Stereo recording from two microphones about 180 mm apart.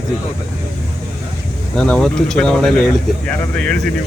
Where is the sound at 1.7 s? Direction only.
Centre (ahead or behind).